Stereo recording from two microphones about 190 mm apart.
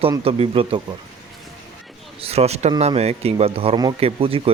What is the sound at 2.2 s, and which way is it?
A man's voice, 30° right (ahead or behind).